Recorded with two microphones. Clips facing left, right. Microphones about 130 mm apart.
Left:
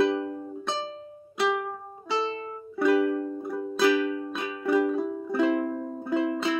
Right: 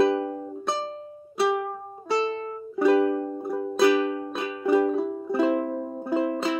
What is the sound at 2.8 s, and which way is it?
Music, 30° right (ahead or behind).